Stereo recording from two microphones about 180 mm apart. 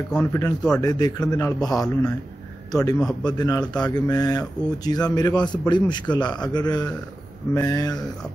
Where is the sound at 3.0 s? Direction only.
Centre (ahead or behind).